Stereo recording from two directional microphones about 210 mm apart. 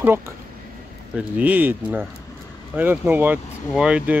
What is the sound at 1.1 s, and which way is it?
Speech, 5° right (ahead or behind).